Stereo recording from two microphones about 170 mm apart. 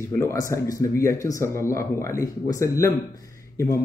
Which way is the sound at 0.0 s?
15° left (ahead or behind).